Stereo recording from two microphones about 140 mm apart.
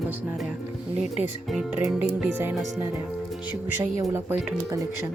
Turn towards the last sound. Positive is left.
turn(degrees=-20)  # may be behind; listen again after turning